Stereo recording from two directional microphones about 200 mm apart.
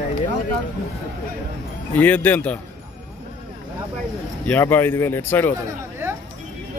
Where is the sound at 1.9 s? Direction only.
10° left (ahead or behind).